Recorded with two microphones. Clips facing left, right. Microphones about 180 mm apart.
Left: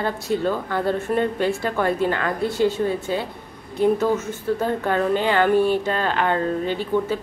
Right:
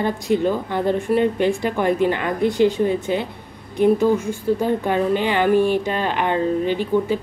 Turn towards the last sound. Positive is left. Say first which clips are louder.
# right 3 dB
turn(degrees=-15)  # may be behind; listen again after turning